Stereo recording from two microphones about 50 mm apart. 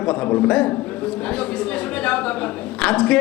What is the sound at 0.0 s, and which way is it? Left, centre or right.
A man's voice, centre.